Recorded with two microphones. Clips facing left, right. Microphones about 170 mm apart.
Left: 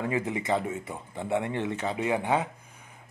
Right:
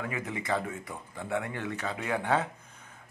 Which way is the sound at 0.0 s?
25° left (ahead or behind).